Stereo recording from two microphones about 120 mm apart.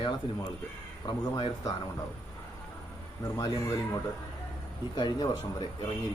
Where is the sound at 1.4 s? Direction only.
35° left (ahead or behind).